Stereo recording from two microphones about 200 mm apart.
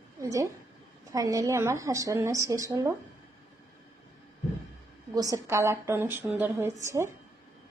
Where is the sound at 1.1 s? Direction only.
15° right (ahead or behind).